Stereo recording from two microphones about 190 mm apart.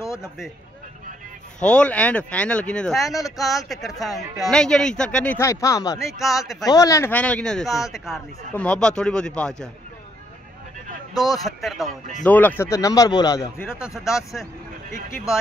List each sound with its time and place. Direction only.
0.0 s a sound: 15° left (ahead or behind)
1.6 s speech: 5° left (ahead or behind)
3.2 s speech: 20° left (ahead or behind)
3.4 s a man's voice: centre (ahead or behind); by 6.1 s 15° left (ahead or behind)
6.1 s a man's voice: centre (ahead or behind)
6.6 s a man's voice: 20° left (ahead or behind)
11.1 s a man's voice: 20° left (ahead or behind)
11.4 s a man's voice: centre (ahead or behind); by 13.7 s 15° left (ahead or behind)
13.7 s a man's voice: 5° right (ahead or behind)